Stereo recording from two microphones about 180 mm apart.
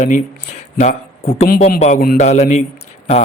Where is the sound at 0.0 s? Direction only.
40° left (ahead or behind).